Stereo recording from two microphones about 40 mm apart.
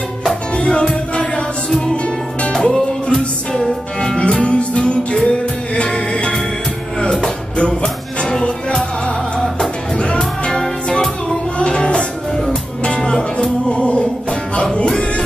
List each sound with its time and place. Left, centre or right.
0.6 s music: left
2.5 s music: left
3.6 s music: centre
4.2 s music: left
9.9 s music: left
10.5 s music: centre
11.5 s music: left
13.7 s music: left